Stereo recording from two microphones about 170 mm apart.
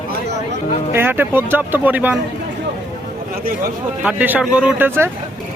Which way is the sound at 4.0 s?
10° right (ahead or behind).